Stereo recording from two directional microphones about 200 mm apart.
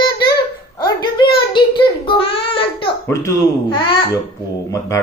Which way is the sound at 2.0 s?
25° left (ahead or behind).